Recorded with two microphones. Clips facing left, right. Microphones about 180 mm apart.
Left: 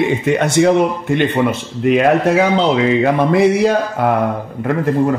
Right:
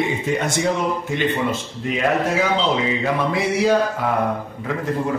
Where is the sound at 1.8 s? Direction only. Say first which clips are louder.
Left 8 dB; 65° left (ahead or behind).